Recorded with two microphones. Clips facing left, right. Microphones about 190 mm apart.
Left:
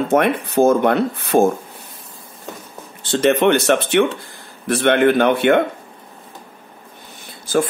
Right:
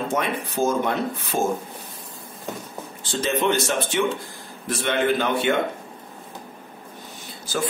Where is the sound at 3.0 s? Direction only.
70° left (ahead or behind).